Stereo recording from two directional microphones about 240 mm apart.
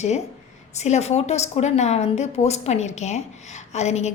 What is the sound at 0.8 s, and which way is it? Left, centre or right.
Speech, left.